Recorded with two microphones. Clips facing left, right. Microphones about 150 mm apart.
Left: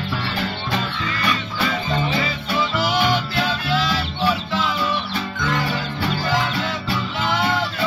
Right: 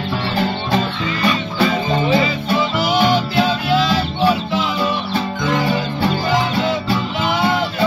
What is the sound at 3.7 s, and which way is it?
Fowl, 20° right (ahead or behind).